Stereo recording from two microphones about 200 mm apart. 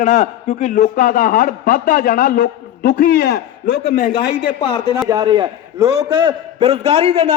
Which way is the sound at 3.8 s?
40° left (ahead or behind).